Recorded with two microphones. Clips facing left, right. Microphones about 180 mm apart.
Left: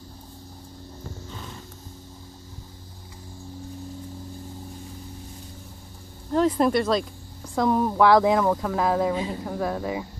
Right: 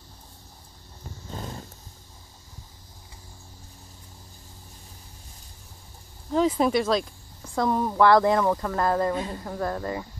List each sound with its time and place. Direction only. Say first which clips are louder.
1.3 s horse: right 3 dB; 40° right (ahead or behind)
6.3 s speech: left 1 dB; centre (ahead or behind)